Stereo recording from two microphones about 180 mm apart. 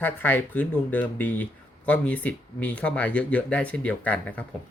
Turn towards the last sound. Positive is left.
turn(degrees=10)  # may be behind; listen again after turning